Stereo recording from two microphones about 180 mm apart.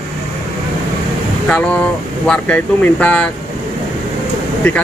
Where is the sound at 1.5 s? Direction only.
5° left (ahead or behind).